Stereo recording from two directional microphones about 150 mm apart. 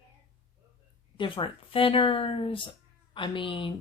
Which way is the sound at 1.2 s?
35° left (ahead or behind).